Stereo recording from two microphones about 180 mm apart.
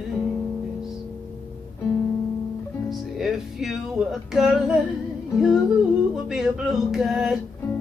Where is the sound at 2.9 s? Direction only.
Centre (ahead or behind).